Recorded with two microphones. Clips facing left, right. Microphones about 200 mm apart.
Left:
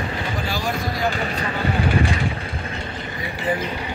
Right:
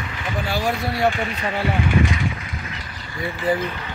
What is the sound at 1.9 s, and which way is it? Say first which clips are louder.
Speech: right 1 dB; 35° left (ahead or behind).